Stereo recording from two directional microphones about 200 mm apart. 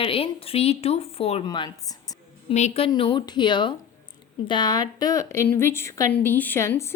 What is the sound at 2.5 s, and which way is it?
A woman's voice, 30° left (ahead or behind).